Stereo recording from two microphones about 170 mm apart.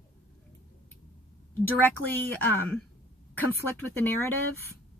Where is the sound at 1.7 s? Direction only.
10° left (ahead or behind).